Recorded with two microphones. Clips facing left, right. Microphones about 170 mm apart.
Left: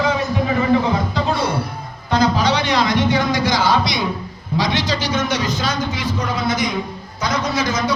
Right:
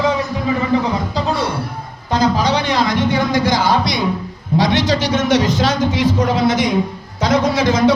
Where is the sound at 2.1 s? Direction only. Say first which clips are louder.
Right 1 dB; 45° right (ahead or behind).